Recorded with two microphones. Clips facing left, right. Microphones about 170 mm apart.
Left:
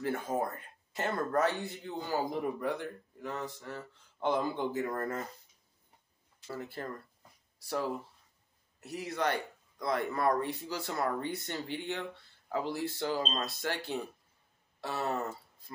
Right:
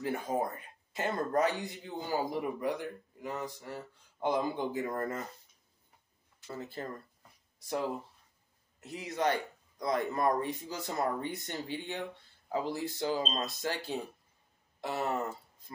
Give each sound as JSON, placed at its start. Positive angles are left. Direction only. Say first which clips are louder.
{"t": 0.0, "sound": "speech", "louder": "even", "side_deg": -15}
{"t": 6.5, "sound": "speech", "louder": "even", "side_deg": -20}
{"t": 8.8, "sound": "speech", "louder": "right 1 dB", "side_deg": -20}
{"t": 14.8, "sound": "speech", "louder": "right 1 dB", "side_deg": -20}